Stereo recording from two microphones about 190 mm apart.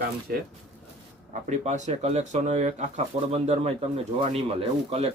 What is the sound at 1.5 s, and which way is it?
Speech, 40° right (ahead or behind).